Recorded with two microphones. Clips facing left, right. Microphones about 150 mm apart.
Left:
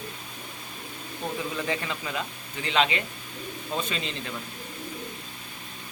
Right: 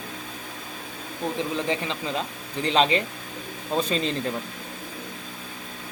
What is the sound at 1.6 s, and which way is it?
Speech, 25° right (ahead or behind).